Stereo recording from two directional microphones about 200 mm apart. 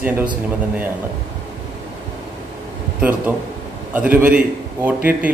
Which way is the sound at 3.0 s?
10° right (ahead or behind).